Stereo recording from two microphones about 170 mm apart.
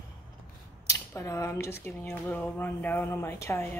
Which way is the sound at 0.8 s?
15° left (ahead or behind).